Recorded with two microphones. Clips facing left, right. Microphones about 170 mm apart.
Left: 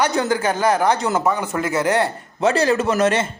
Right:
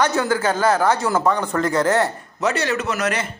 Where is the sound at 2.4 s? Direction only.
30° left (ahead or behind).